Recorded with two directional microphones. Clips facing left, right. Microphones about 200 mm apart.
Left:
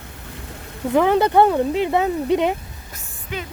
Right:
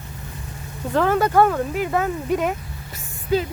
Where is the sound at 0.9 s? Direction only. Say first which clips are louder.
Left 2 dB; 15° left (ahead or behind).